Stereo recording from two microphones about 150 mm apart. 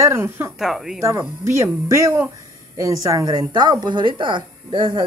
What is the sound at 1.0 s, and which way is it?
Speech, 20° right (ahead or behind).